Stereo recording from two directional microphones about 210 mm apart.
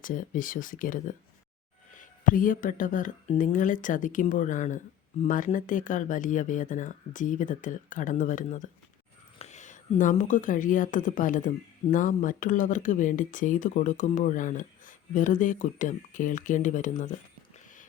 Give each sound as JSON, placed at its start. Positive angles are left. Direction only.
{"t": 0.0, "sound": "speech", "side_deg": 40}